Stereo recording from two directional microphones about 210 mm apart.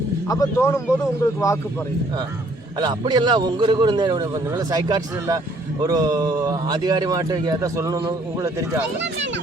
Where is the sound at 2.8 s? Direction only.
20° right (ahead or behind).